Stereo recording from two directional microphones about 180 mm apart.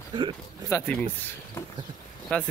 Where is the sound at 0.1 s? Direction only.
25° right (ahead or behind).